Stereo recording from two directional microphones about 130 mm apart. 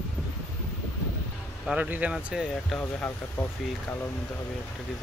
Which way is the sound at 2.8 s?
15° left (ahead or behind).